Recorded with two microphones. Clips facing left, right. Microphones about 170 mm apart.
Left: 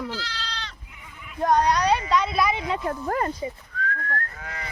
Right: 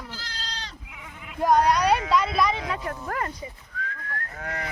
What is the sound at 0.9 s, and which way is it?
Sheep, 90° right.